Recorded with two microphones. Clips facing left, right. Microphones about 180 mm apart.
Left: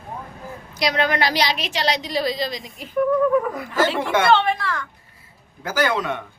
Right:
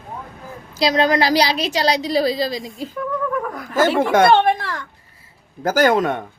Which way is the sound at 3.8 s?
45° right (ahead or behind).